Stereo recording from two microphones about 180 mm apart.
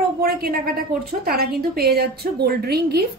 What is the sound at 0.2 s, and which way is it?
A woman's voice, 55° right (ahead or behind).